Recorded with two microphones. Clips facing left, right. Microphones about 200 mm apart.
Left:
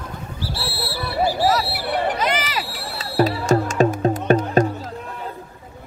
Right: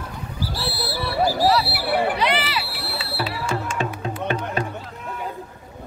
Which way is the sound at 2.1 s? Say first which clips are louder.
Even; 45° left (ahead or behind).